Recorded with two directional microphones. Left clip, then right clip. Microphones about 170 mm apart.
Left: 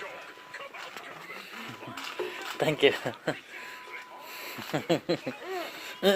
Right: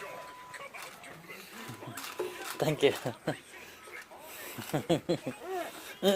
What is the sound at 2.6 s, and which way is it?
Speech, centre (ahead or behind).